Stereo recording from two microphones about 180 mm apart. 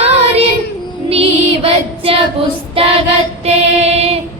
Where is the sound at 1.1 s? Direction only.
35° right (ahead or behind).